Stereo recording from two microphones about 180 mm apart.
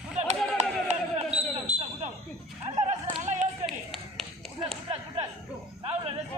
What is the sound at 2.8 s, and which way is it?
Music, 40° right (ahead or behind).